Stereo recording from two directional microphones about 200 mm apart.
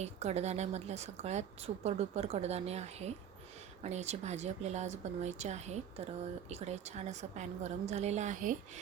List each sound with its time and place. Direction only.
0.0 s speech: 35° right (ahead or behind)